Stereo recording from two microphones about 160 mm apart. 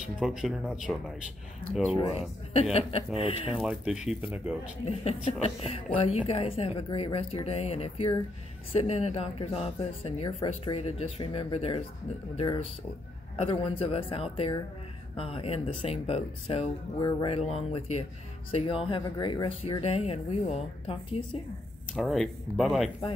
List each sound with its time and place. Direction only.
0.2 s speech: 5° right (ahead or behind)
1.6 s speech: 30° left (ahead or behind)
3.5 s speech: 5° right (ahead or behind)
4.8 s speech: 40° left (ahead or behind)
21.9 s speech: centre (ahead or behind)